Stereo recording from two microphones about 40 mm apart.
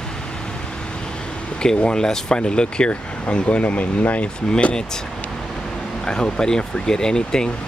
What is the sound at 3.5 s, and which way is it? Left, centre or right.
Speech, left.